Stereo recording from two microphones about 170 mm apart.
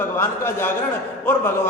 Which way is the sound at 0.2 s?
15° left (ahead or behind).